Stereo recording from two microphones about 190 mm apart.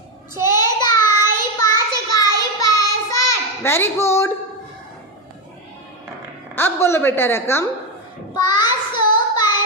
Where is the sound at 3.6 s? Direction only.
15° left (ahead or behind).